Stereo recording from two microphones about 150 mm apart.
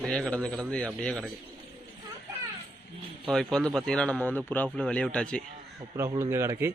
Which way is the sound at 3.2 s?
Centre (ahead or behind).